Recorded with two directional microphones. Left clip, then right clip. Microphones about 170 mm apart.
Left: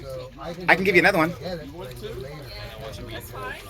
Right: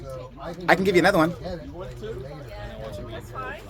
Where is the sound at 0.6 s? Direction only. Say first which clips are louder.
Left 1 dB; 20° right (ahead or behind).